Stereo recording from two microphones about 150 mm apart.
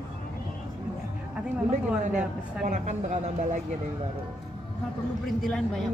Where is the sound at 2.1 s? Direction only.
50° right (ahead or behind).